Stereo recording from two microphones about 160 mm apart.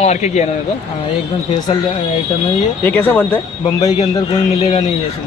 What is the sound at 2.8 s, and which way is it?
Speech, 10° left (ahead or behind).